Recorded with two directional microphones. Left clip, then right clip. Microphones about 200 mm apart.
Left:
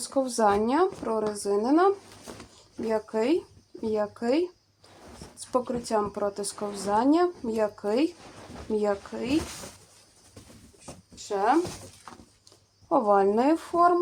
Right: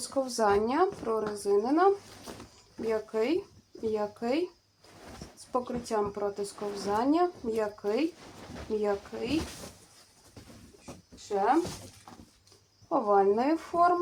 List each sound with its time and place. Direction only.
0.1 s speech: 40° left (ahead or behind)
5.5 s speech: 45° left (ahead or behind)
11.3 s speech: 50° left (ahead or behind)
12.9 s speech: 45° left (ahead or behind)